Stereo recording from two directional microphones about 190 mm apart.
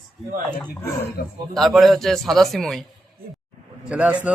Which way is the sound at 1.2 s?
60° left (ahead or behind).